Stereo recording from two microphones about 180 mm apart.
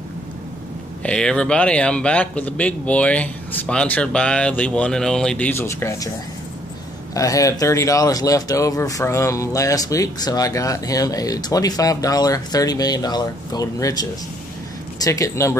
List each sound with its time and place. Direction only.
1.0 s a man's voice: 5° left (ahead or behind)
7.2 s speech: 20° left (ahead or behind)